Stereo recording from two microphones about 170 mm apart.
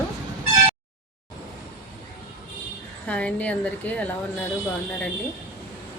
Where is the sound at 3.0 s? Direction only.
10° left (ahead or behind).